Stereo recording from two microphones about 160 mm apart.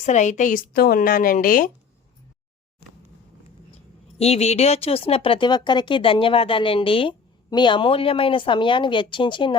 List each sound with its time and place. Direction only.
0.0 s a woman's voice: 50° left (ahead or behind)
4.2 s speech: 40° left (ahead or behind)